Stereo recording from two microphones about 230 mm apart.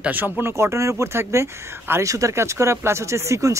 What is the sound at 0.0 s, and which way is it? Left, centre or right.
Speech, centre.